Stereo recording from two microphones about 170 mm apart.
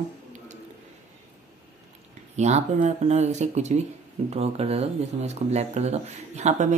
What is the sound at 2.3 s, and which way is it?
Speech, 40° right (ahead or behind).